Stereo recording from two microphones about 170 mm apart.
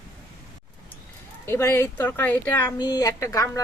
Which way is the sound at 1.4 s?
15° left (ahead or behind).